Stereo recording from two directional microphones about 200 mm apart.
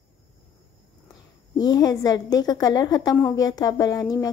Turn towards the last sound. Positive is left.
turn(degrees=20)  # may be behind; listen again after turning